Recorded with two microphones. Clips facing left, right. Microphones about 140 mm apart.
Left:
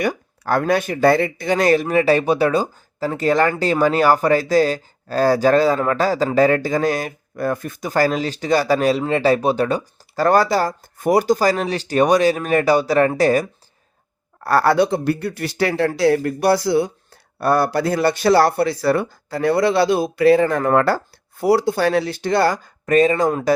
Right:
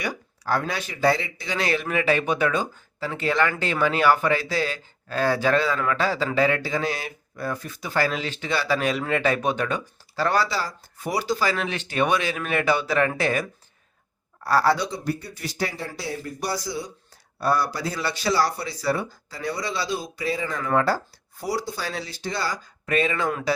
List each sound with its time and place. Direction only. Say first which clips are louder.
0.0 s speech: left 8 dB; 55° left (ahead or behind)
14.4 s speech: left 6 dB; 55° left (ahead or behind)